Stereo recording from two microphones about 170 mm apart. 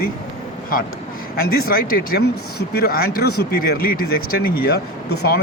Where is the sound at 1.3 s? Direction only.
60° left (ahead or behind).